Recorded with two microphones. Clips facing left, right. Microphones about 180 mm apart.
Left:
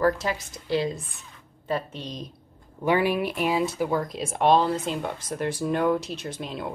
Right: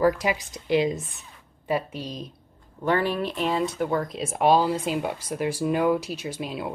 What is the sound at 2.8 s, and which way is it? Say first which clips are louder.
Speech: left 1 dB; 10° left (ahead or behind).